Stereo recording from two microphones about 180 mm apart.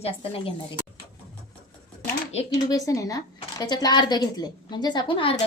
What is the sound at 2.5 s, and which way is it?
A woman's voice, 20° left (ahead or behind).